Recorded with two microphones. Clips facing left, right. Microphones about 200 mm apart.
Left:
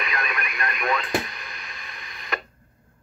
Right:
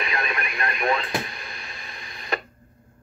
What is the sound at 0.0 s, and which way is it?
Radio, 30° right (ahead or behind).